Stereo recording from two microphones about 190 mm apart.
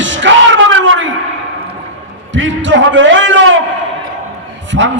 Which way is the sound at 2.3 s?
75° right (ahead or behind).